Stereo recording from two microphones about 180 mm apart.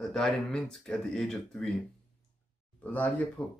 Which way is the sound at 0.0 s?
5° left (ahead or behind).